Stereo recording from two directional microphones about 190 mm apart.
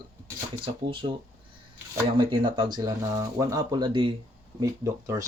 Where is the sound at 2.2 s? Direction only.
25° right (ahead or behind).